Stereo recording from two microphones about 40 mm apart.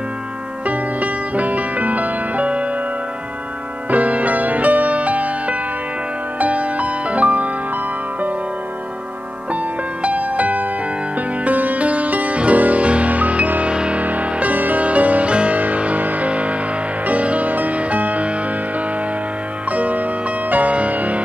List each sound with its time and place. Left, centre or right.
0.7 s music: right
3.9 s music: right
10.0 s music: right
13.7 s music: right
14.0 s music: right
19.7 s music: right